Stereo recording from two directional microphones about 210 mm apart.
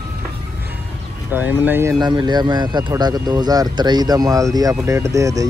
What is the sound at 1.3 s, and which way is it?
Speech, 10° right (ahead or behind).